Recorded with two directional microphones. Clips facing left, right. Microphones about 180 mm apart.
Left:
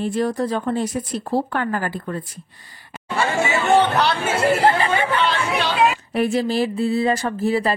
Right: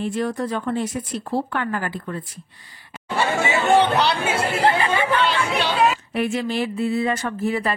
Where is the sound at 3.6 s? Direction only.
10° right (ahead or behind).